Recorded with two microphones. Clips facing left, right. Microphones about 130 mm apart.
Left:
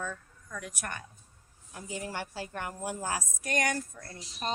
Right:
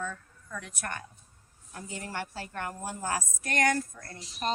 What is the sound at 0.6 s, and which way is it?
Speech, 10° left (ahead or behind).